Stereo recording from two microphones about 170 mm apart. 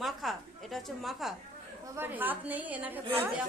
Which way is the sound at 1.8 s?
10° right (ahead or behind).